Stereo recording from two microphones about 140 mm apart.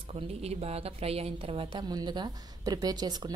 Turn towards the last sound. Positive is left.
turn(degrees=-30)  # may be behind; listen again after turning